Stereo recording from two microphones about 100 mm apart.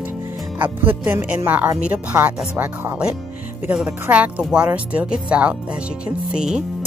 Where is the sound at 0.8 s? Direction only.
20° right (ahead or behind).